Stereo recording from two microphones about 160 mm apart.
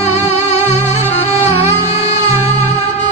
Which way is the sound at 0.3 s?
45° left (ahead or behind).